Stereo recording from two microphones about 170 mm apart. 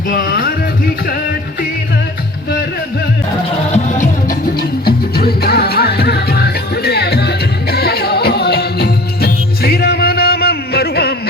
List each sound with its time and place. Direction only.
0.1 s music: 60° left (ahead or behind)
3.7 s music: 50° left (ahead or behind)
4.9 s music: 65° left (ahead or behind)